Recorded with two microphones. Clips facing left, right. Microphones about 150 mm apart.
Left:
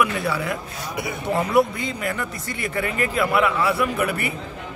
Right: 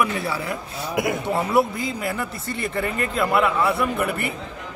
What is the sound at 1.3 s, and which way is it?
Speech, centre (ahead or behind).